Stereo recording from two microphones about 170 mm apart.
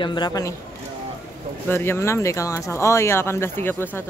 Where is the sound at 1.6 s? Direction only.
15° left (ahead or behind).